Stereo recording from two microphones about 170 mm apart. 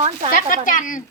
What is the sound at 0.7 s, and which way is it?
Speech, 50° left (ahead or behind).